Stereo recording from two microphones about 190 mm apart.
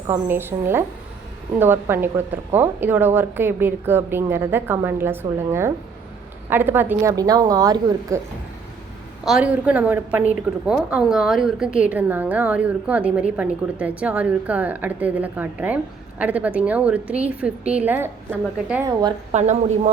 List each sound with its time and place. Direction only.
0.1 s a woman's voice: 10° right (ahead or behind)
9.2 s a woman's voice: 5° right (ahead or behind)
19.3 s a woman's voice: 35° right (ahead or behind)